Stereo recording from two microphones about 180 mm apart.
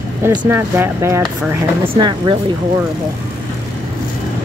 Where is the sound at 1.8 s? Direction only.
30° right (ahead or behind).